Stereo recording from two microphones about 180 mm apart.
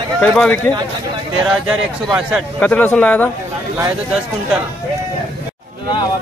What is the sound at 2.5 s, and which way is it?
Speech, 10° left (ahead or behind).